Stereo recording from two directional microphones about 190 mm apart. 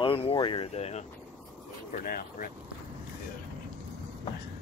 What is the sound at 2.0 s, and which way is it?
Speech, 50° left (ahead or behind).